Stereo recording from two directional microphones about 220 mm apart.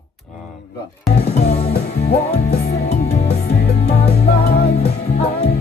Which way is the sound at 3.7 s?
30° left (ahead or behind).